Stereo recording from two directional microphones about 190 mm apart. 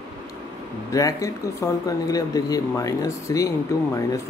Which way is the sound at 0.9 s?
15° left (ahead or behind).